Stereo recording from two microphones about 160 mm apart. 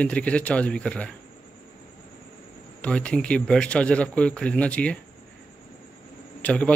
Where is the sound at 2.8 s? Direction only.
5° left (ahead or behind).